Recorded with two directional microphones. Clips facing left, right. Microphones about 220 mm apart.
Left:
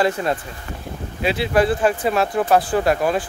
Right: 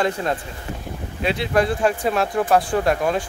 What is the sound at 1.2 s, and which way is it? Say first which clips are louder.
Speech: left 2 dB; 5° left (ahead or behind).